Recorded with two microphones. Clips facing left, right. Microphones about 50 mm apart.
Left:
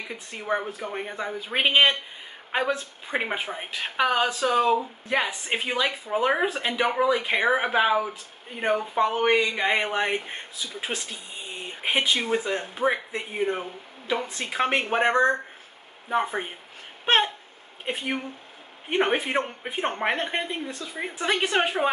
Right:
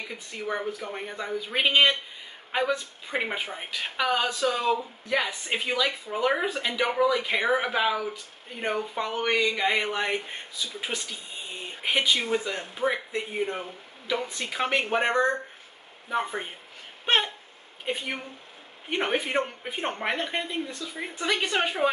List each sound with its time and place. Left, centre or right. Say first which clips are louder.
0.3 s speech: left 3 dB; centre
3.1 s speech: left 2 dB; centre
6.7 s speech: even; centre
8.5 s speech: left 5 dB; centre
12.1 s speech: left 1 dB; centre
14.4 s speech: left 3 dB; left